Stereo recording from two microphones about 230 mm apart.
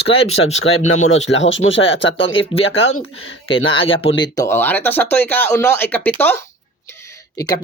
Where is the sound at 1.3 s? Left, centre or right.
Left.